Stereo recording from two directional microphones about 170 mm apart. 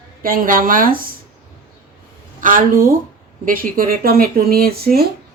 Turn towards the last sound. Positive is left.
turn(degrees=-65)  # may be behind; listen again after turning